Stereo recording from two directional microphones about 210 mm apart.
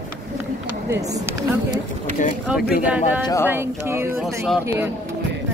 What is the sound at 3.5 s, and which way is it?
Speech, 10° right (ahead or behind).